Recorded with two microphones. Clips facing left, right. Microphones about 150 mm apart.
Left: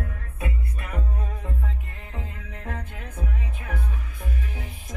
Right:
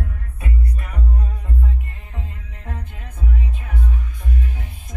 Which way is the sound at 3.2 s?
45° left (ahead or behind).